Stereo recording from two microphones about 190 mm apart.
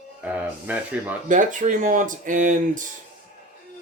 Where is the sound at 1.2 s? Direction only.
45° right (ahead or behind).